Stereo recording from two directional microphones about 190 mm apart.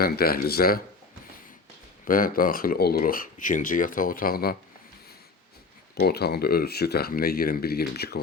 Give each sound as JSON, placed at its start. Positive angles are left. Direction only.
{"t": 0.0, "sound": "speech", "side_deg": 50}
{"t": 2.0, "sound": "speech", "side_deg": 50}
{"t": 5.9, "sound": "speech", "side_deg": 55}